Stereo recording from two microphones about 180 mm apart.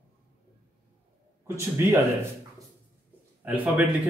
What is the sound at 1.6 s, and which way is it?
Speech, 15° right (ahead or behind).